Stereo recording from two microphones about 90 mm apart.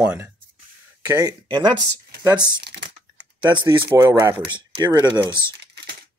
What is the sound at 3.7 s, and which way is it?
Speech, 40° right (ahead or behind).